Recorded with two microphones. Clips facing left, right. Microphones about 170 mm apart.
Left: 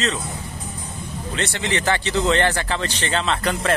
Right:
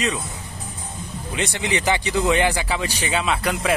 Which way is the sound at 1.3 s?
15° right (ahead or behind).